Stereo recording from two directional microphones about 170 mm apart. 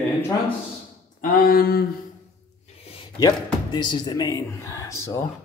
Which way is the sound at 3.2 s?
25° left (ahead or behind).